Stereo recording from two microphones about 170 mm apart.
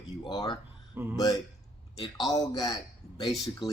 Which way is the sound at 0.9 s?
15° right (ahead or behind).